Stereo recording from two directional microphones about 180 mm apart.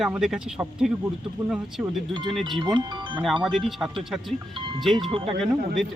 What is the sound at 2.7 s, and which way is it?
Speech, 25° right (ahead or behind).